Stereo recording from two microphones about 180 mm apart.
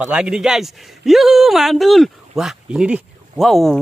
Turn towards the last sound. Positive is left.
turn(degrees=0)  # may be behind; listen again after turning